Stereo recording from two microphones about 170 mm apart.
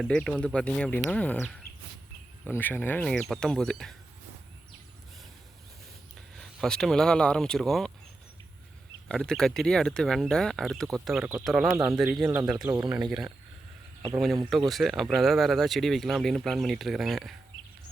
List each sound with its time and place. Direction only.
0.0 s speech: 5° left (ahead or behind)
6.3 s speech: 5° left (ahead or behind)
9.0 s speech: 5° left (ahead or behind)
12.6 s speech: 20° right (ahead or behind)
12.9 s speech: centre (ahead or behind)
14.7 s speech: centre (ahead or behind)